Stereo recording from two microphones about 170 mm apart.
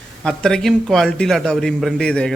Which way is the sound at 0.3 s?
5° left (ahead or behind).